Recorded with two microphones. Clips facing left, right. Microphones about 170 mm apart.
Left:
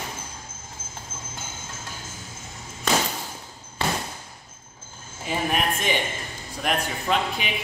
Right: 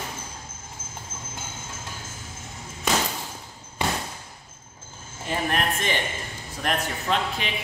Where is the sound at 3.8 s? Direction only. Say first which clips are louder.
Even; 15° right (ahead or behind).